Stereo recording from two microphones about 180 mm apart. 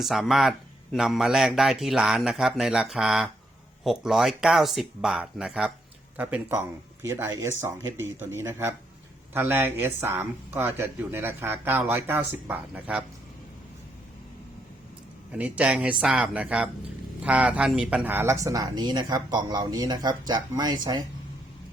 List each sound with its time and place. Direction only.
0.0 s a man's voice: centre (ahead or behind)
15.3 s speech: 10° right (ahead or behind); by 21.0 s 25° right (ahead or behind)